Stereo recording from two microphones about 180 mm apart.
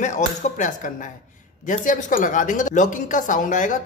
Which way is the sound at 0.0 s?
45° left (ahead or behind).